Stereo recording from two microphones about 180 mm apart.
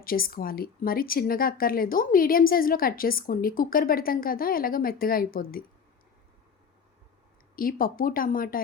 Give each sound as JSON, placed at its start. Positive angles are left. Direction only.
{"t": 0.0, "sound": "speech", "side_deg": 55}
{"t": 7.5, "sound": "speech", "side_deg": 50}